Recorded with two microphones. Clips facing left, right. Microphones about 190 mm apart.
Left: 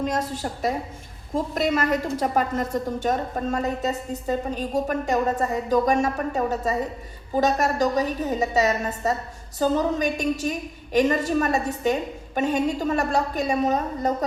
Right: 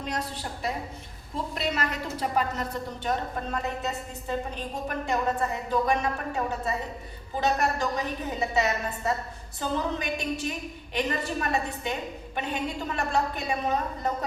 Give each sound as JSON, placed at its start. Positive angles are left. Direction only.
{"t": 0.0, "sound": "a woman's voice", "side_deg": 45}